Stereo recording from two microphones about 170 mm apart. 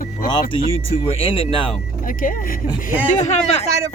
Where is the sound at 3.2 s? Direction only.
45° left (ahead or behind).